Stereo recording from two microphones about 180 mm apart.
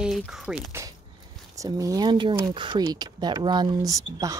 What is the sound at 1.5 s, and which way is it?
Speech, 20° right (ahead or behind).